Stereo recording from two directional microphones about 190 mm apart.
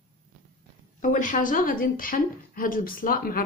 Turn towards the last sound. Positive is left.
turn(degrees=50)  # may be behind; listen again after turning